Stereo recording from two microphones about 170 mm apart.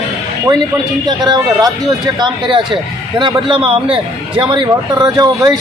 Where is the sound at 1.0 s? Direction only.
25° right (ahead or behind).